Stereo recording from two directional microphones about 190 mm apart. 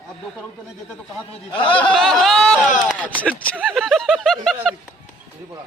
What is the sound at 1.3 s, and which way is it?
Speech, 25° left (ahead or behind).